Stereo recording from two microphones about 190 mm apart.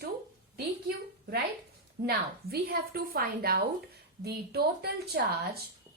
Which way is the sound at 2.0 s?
55° right (ahead or behind).